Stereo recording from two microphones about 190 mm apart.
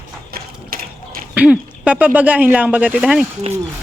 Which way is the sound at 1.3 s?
5° right (ahead or behind).